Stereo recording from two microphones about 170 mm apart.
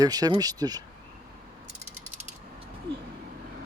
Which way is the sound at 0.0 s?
20° right (ahead or behind).